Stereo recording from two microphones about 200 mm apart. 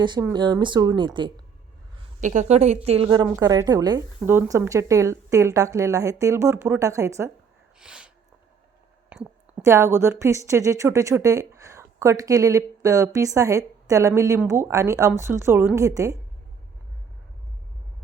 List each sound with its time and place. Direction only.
0.0 s speech: 20° right (ahead or behind)
2.2 s a woman's voice: 35° right (ahead or behind)
3.1 s speech: 15° right (ahead or behind)
7.8 s sneeze: 5° right (ahead or behind)
9.1 s a sound: 5° right (ahead or behind)
9.6 s speech: 15° right (ahead or behind)